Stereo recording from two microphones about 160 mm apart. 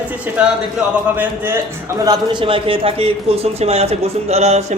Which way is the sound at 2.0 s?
30° right (ahead or behind).